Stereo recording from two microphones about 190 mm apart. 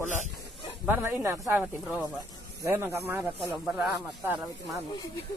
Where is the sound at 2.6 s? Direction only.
15° right (ahead or behind).